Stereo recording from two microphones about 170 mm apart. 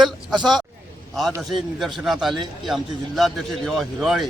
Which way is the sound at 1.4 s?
Centre (ahead or behind).